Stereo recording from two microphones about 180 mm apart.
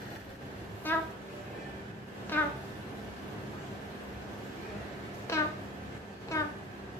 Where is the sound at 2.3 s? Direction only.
10° left (ahead or behind).